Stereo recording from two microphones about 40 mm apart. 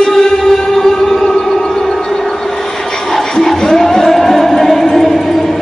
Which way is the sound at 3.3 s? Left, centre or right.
Centre.